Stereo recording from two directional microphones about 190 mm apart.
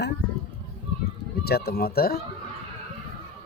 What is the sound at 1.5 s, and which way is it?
Speech, 55° left (ahead or behind).